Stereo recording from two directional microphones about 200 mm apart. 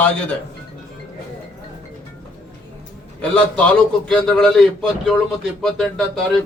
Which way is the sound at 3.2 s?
5° left (ahead or behind).